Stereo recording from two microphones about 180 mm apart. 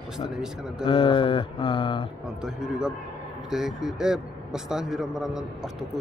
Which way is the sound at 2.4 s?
5° right (ahead or behind).